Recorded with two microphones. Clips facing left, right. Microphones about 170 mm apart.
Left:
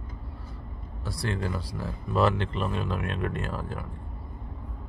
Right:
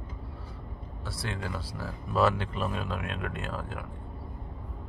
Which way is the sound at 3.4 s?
Centre (ahead or behind).